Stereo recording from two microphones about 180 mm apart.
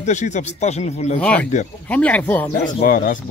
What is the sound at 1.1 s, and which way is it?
Speech, 5° left (ahead or behind).